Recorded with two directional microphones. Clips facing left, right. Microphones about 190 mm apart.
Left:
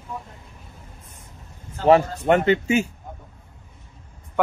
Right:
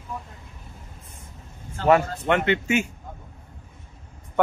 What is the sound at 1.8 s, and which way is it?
Speech, 35° left (ahead or behind).